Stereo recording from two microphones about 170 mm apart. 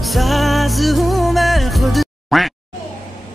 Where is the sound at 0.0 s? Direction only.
Centre (ahead or behind).